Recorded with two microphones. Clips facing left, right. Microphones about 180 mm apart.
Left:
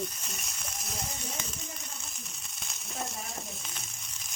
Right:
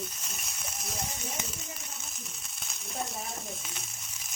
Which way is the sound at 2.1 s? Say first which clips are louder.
Right 1 dB; centre (ahead or behind).